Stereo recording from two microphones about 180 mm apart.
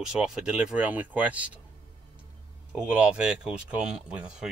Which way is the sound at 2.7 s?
5° right (ahead or behind).